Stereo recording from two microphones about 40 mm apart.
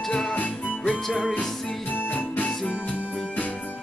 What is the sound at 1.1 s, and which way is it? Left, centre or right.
Music, centre.